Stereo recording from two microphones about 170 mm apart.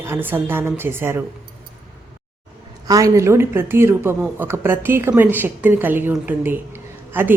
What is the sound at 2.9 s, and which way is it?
Speech, 20° right (ahead or behind).